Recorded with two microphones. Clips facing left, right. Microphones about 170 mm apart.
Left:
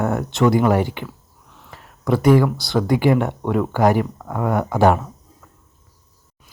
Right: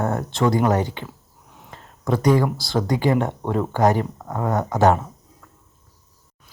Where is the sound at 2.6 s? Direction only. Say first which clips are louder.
Left 3 dB; 20° right (ahead or behind).